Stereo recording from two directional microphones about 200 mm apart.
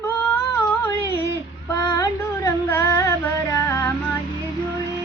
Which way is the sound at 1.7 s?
15° left (ahead or behind).